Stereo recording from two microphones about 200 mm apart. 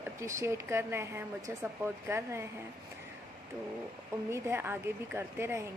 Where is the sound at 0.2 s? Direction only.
15° right (ahead or behind).